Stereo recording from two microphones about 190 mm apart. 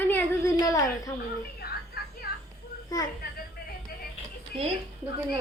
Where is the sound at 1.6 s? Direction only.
55° left (ahead or behind).